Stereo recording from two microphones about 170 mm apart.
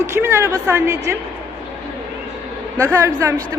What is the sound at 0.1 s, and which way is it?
A woman's voice, 15° right (ahead or behind).